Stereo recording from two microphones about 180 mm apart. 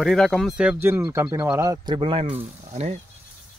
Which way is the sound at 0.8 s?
15° right (ahead or behind).